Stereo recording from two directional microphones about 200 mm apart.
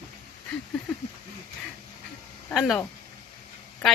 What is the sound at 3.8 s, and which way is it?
Speech, centre (ahead or behind).